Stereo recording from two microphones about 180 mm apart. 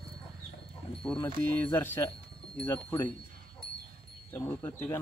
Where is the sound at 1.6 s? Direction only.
10° left (ahead or behind).